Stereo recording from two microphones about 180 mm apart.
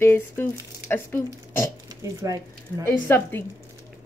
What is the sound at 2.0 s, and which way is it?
Speech, 20° right (ahead or behind).